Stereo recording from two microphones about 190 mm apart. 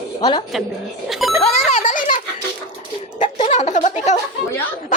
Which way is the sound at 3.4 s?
40° left (ahead or behind).